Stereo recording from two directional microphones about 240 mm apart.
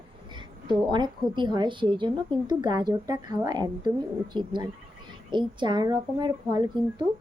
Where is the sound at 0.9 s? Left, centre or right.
Centre.